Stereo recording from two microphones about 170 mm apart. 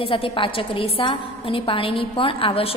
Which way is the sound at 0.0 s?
30° left (ahead or behind).